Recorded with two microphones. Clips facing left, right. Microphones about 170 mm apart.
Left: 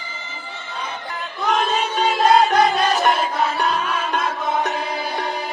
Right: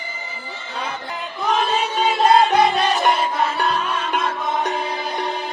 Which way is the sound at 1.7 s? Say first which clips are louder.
Even; centre (ahead or behind).